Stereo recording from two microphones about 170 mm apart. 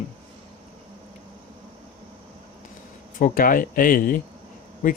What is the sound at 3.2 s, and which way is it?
Speech, 55° left (ahead or behind).